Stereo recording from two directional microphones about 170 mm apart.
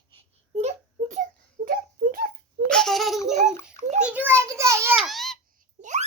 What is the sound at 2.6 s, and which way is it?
Laughter, 5° left (ahead or behind).